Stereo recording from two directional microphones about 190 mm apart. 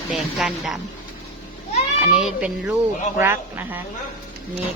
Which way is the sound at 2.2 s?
5° right (ahead or behind).